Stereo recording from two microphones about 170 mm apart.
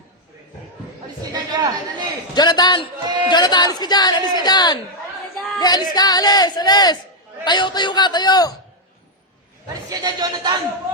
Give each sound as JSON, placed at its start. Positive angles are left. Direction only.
{"t": 1.2, "sound": "a sound", "side_deg": -20}
{"t": 2.3, "sound": "speech", "side_deg": 25}
{"t": 9.9, "sound": "speech", "side_deg": -25}